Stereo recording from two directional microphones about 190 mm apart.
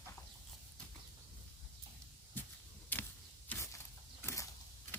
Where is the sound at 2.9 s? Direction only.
10° left (ahead or behind).